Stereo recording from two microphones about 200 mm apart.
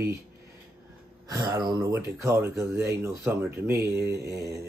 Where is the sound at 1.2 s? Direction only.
20° right (ahead or behind).